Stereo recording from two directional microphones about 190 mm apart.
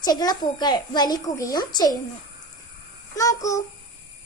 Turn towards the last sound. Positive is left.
turn(degrees=15)  # may be behind; listen again after turning